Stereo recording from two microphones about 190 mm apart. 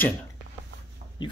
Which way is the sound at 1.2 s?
25° left (ahead or behind).